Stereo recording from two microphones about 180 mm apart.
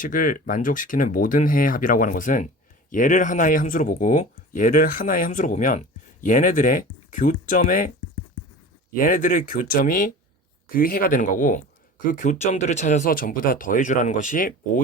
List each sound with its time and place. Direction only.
0.0 s speech: 50° left (ahead or behind)
9.0 s speech: 50° left (ahead or behind)